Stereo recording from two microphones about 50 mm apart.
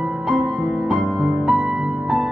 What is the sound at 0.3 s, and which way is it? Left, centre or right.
Music, centre.